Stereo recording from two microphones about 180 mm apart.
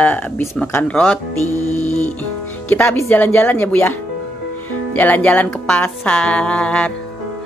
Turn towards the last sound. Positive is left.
turn(degrees=5)  # may be behind; listen again after turning